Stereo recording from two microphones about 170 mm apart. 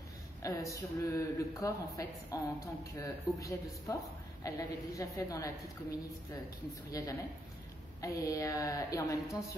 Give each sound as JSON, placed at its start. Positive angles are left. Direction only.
{"t": 0.4, "sound": "speech", "side_deg": 20}
{"t": 6.9, "sound": "speech", "side_deg": 20}